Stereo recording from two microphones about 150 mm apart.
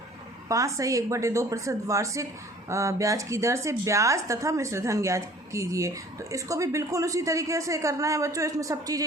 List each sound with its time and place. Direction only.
0.4 s speech: 20° right (ahead or behind)